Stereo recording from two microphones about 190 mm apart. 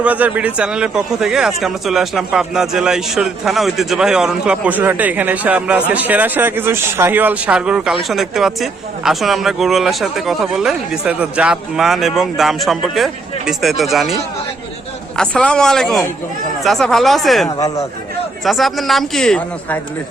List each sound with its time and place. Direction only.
0.0 s a man's voice: 10° right (ahead or behind)
15.2 s a man's voice: 5° left (ahead or behind)